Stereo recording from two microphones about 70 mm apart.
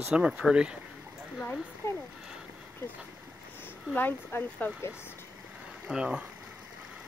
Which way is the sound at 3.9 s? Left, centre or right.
Left.